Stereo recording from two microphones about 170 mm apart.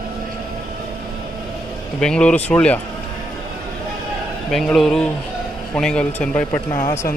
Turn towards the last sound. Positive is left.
turn(degrees=15)  # may be behind; listen again after turning